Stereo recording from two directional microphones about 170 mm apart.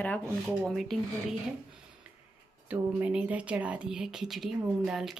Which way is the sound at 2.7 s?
5° right (ahead or behind).